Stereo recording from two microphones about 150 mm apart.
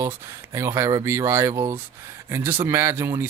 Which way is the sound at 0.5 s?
20° right (ahead or behind).